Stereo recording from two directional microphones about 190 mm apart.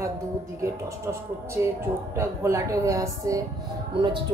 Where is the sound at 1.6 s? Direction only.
15° right (ahead or behind).